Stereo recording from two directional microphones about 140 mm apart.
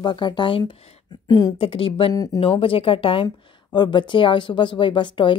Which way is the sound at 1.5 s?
40° left (ahead or behind).